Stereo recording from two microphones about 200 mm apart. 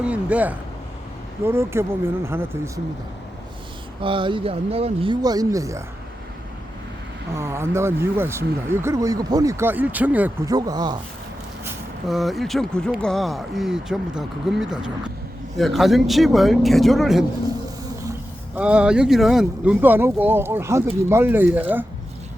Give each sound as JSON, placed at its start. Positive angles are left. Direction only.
{"t": 0.0, "sound": "speech", "side_deg": -5}
{"t": 4.0, "sound": "speech", "side_deg": -25}
{"t": 7.3, "sound": "speech", "side_deg": -15}
{"t": 10.5, "sound": "speech", "side_deg": -20}
{"t": 12.0, "sound": "speech", "side_deg": 0}
{"t": 18.5, "sound": "speech", "side_deg": -5}